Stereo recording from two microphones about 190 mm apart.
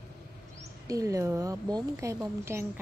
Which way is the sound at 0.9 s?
15° right (ahead or behind).